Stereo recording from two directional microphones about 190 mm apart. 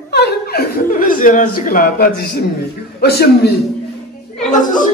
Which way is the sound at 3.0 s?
55° left (ahead or behind).